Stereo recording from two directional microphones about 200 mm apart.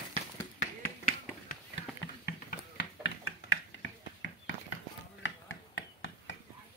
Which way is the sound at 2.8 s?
70° left (ahead or behind).